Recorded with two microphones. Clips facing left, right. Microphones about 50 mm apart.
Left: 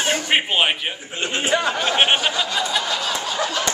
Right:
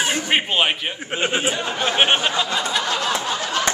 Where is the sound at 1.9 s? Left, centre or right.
Centre.